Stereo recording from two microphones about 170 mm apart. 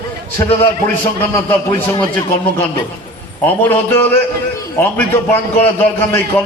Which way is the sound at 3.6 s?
10° left (ahead or behind).